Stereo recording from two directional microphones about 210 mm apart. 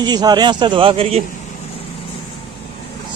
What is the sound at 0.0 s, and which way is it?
Speech, 20° right (ahead or behind).